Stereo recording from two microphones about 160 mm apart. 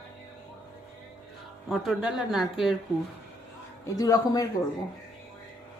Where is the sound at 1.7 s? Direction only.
Centre (ahead or behind).